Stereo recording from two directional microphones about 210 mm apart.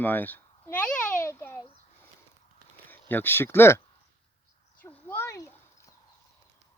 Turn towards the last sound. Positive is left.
turn(degrees=15)  # may be behind; listen again after turning